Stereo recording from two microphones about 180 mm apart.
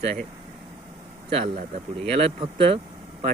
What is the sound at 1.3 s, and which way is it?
Speech, 35° right (ahead or behind).